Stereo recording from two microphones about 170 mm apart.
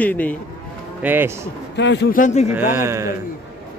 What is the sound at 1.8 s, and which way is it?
Speech, 90° left.